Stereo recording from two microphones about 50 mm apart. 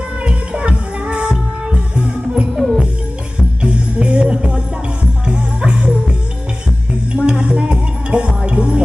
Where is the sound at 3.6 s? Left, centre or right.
Right.